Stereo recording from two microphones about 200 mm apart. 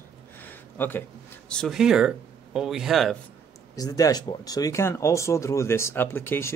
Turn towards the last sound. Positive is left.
turn(degrees=10)  # may be behind; listen again after turning